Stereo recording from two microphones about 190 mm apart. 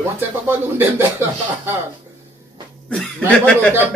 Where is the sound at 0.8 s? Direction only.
10° right (ahead or behind).